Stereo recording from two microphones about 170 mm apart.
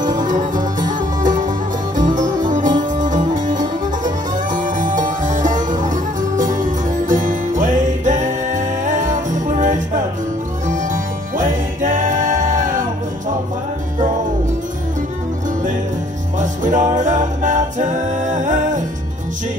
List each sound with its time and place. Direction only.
0.1 s music: 50° right (ahead or behind)
16.3 s music: 50° right (ahead or behind)